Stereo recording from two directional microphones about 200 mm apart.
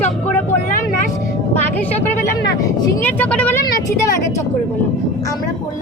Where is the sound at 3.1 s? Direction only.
10° left (ahead or behind).